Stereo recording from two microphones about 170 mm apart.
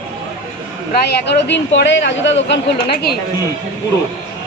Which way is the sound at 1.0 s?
85° left.